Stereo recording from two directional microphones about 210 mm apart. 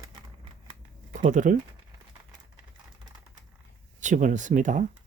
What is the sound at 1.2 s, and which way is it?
Speech, 35° right (ahead or behind).